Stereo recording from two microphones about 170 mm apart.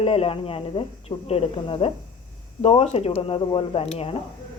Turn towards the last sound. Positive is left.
turn(degrees=35)  # may be behind; listen again after turning